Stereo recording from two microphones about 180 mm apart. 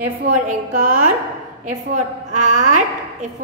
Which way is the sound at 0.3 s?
50° right (ahead or behind).